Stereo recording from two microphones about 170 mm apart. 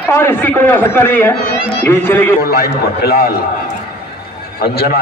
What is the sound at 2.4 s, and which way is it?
A man's voice, 60° left (ahead or behind).